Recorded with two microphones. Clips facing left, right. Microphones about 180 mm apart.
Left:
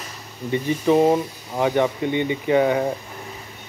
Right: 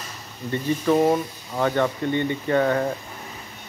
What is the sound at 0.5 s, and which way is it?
Speech, 20° left (ahead or behind).